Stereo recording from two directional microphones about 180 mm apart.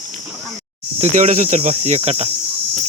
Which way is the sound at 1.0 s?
40° right (ahead or behind).